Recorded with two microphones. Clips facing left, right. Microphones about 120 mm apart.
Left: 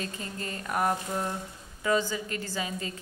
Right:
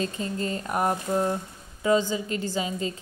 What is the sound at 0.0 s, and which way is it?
A woman's voice, 25° right (ahead or behind).